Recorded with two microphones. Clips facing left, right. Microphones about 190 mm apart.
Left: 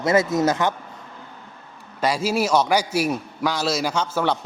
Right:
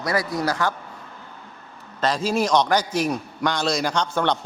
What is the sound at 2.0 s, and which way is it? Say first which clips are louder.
A man's voice: even; 10° left (ahead or behind).